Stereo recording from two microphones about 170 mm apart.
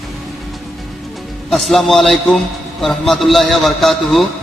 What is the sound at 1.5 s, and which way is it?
A man's voice, centre (ahead or behind).